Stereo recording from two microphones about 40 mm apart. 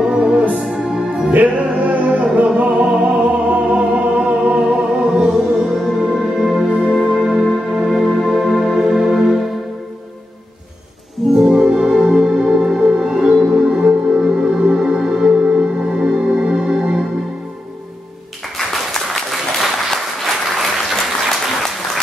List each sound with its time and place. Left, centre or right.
0.0 s music: centre
1.2 s music: right
4.9 s music: centre
11.3 s music: centre
11.6 s music: centre
19.0 s applause: centre